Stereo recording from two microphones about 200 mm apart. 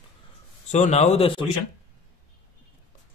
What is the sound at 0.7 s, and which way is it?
Speech, 35° left (ahead or behind).